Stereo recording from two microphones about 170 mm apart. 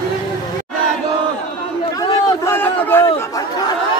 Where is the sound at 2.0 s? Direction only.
20° left (ahead or behind).